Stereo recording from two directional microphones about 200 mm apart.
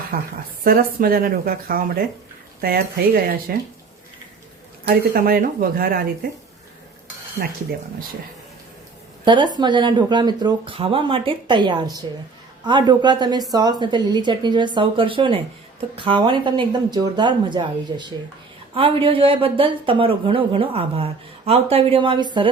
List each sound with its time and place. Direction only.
0.6 s speech: 50° right (ahead or behind)
4.9 s speech: 50° right (ahead or behind)
7.4 s speech: 45° right (ahead or behind)
9.2 s speech: 25° right (ahead or behind)